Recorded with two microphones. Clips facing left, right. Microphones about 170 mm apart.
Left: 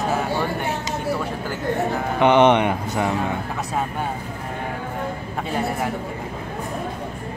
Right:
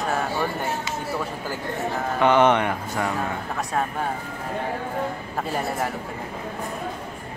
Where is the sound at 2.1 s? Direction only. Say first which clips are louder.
Left 3 dB; 20° left (ahead or behind).